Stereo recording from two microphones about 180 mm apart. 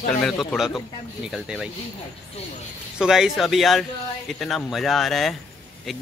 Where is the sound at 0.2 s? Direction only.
5° left (ahead or behind).